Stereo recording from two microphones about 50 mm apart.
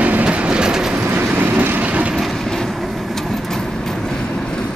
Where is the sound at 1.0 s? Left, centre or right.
Right.